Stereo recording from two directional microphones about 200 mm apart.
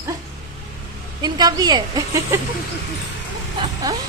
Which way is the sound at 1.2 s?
20° right (ahead or behind).